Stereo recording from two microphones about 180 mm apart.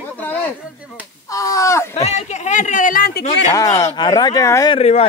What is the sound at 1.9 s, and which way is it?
Speech, 35° left (ahead or behind).